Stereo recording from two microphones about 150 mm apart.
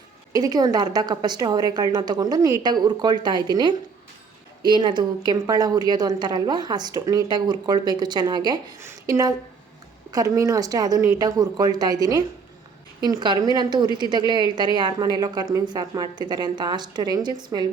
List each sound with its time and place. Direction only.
0.3 s a woman's voice: 25° right (ahead or behind)